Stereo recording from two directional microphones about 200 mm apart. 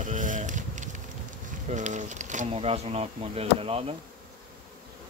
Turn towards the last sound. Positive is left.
turn(degrees=-30)  # may be behind; listen again after turning